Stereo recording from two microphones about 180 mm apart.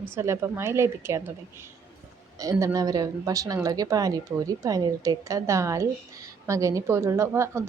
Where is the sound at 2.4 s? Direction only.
15° right (ahead or behind).